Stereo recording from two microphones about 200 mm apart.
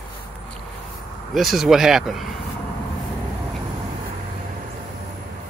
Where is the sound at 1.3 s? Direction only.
Centre (ahead or behind).